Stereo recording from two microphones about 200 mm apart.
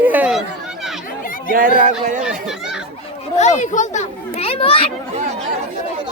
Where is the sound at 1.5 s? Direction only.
45° right (ahead or behind).